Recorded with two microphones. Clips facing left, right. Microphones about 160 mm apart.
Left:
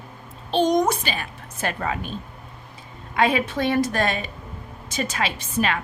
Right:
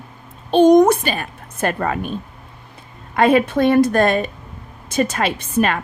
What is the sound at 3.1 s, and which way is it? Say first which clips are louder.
A woman's voice: right 7 dB; 50° right (ahead or behind).